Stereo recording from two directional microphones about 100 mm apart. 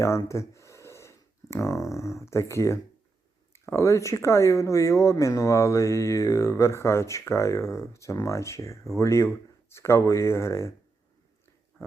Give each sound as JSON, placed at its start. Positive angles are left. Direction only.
{"t": 0.3, "sound": "speech", "side_deg": 30}